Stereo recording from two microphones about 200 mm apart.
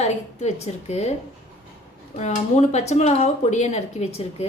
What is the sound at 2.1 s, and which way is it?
A woman's voice, 35° left (ahead or behind).